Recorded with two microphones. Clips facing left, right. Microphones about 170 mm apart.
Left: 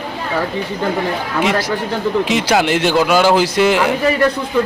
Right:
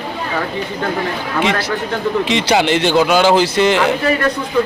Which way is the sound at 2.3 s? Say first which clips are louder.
Right 2 dB; 5° left (ahead or behind).